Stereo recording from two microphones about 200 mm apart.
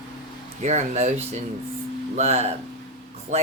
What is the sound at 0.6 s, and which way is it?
Speech, 35° right (ahead or behind).